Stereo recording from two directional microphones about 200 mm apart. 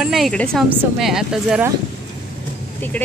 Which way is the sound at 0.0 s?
Centre (ahead or behind).